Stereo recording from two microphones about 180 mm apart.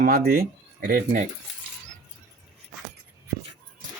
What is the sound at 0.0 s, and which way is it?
Speech, 55° right (ahead or behind).